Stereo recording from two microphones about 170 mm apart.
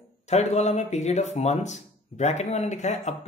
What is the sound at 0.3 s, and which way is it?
Speech, 40° left (ahead or behind).